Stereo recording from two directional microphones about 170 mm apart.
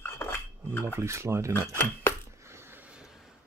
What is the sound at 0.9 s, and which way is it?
Speech, 15° right (ahead or behind).